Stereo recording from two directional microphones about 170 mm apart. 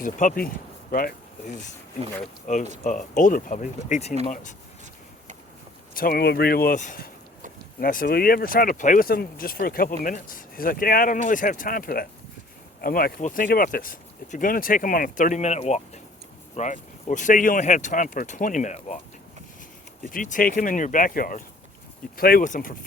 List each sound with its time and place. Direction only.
0.0 s speech: 50° left (ahead or behind)
5.9 s speech: 55° left (ahead or behind)
6.7 s speech: 50° left (ahead or behind)
20.1 s speech: 50° left (ahead or behind)